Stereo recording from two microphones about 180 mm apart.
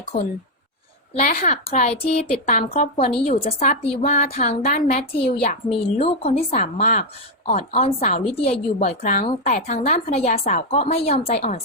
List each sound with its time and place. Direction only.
1.1 s a woman's voice: 45° left (ahead or behind)